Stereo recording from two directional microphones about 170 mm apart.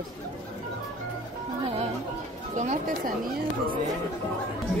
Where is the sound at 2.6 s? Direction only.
45° right (ahead or behind).